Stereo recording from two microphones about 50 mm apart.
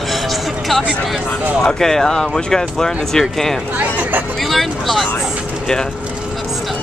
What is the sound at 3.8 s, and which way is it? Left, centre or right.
Speech, right.